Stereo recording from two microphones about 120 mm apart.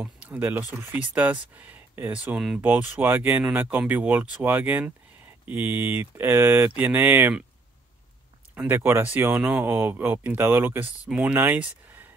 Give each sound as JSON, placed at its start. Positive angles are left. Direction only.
{"t": 0.0, "sound": "speech", "side_deg": -10}
{"t": 2.6, "sound": "speech", "side_deg": -15}
{"t": 8.5, "sound": "speech", "side_deg": -20}
{"t": 11.1, "sound": "speech", "side_deg": -5}
{"t": 11.3, "sound": "speech", "side_deg": -15}